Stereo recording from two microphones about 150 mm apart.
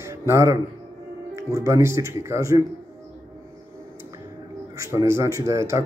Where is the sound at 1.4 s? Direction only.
20° right (ahead or behind).